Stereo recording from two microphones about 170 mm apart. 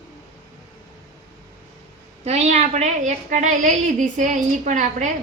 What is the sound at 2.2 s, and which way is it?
A woman's voice, 40° right (ahead or behind).